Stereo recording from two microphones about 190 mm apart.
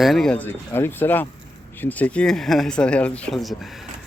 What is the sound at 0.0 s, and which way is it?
Speech, centre (ahead or behind).